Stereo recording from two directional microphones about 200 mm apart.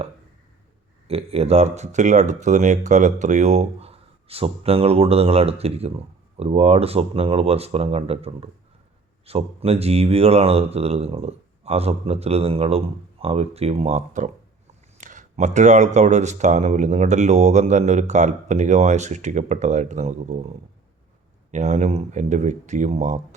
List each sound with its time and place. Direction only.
1.0 s speech: 30° right (ahead or behind)
21.5 s speech: 35° right (ahead or behind)